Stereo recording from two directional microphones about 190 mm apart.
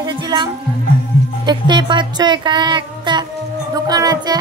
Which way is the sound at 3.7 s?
20° right (ahead or behind).